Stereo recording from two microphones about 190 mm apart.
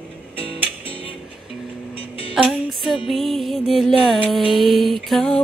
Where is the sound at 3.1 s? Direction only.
Centre (ahead or behind).